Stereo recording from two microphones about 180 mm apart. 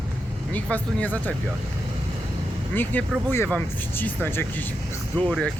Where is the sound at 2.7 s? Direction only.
10° left (ahead or behind).